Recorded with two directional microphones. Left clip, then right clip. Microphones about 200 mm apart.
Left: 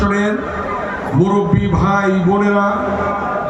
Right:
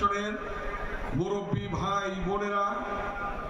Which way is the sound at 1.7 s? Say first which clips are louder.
Left 12 dB; 20° right (ahead or behind).